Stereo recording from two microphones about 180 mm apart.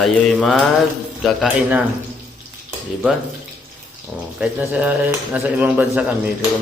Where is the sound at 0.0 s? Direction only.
Centre (ahead or behind).